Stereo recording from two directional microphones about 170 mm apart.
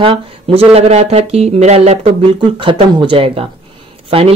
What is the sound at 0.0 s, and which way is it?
Speech, 35° right (ahead or behind).